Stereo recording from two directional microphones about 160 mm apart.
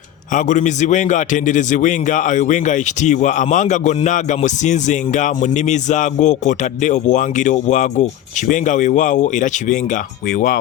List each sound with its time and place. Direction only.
0.3 s a man's voice: 50° left (ahead or behind)